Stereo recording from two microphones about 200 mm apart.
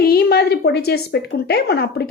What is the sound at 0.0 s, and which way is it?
A woman's voice, 50° left (ahead or behind).